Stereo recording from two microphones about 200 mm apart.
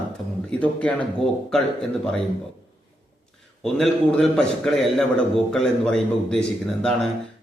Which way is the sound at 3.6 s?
5° left (ahead or behind).